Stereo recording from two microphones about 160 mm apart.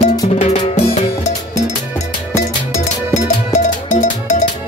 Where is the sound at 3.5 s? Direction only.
50° left (ahead or behind).